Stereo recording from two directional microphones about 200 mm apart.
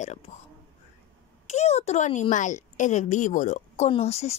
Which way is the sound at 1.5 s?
35° left (ahead or behind).